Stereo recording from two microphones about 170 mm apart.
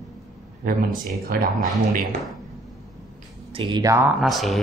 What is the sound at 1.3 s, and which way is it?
Speech, 55° right (ahead or behind).